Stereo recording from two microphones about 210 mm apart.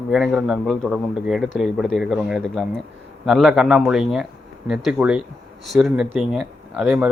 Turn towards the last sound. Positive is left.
turn(degrees=-5)  # may be behind; listen again after turning